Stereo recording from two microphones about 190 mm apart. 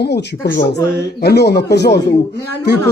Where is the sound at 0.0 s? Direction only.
55° left (ahead or behind).